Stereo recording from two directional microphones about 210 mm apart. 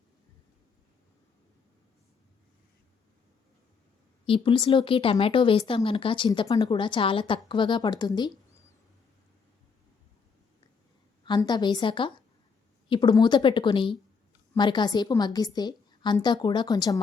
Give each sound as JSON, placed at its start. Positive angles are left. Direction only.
{"t": 4.3, "sound": "speech", "side_deg": 25}
{"t": 11.3, "sound": "speech", "side_deg": 20}